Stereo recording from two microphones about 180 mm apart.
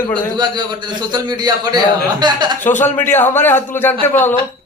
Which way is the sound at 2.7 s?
40° left (ahead or behind).